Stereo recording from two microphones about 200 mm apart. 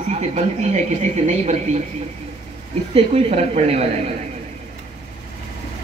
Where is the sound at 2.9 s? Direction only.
30° right (ahead or behind).